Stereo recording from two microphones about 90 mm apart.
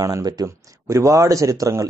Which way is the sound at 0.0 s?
45° right (ahead or behind).